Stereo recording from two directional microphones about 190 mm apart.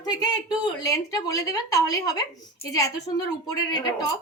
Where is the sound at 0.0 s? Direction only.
20° left (ahead or behind).